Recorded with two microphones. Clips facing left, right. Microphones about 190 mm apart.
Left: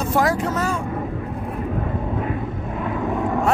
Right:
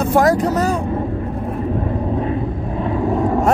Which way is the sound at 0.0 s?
50° right (ahead or behind).